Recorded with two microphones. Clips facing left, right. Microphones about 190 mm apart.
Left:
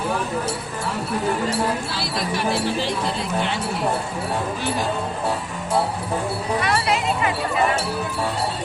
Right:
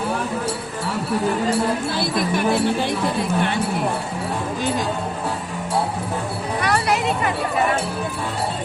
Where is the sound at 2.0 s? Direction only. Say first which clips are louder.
Right 4 dB; 55° right (ahead or behind).